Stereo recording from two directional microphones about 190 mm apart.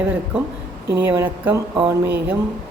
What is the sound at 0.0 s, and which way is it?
Speech, 10° right (ahead or behind).